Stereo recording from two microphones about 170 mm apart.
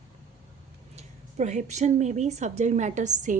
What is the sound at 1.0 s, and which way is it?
A woman's voice, 45° right (ahead or behind).